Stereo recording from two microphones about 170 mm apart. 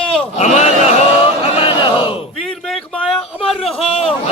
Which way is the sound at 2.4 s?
Centre (ahead or behind).